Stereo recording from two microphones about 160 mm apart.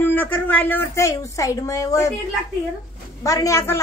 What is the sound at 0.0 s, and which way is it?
Speech, 10° left (ahead or behind).